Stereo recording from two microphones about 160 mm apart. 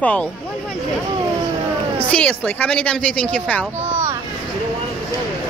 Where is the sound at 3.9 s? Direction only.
15° right (ahead or behind).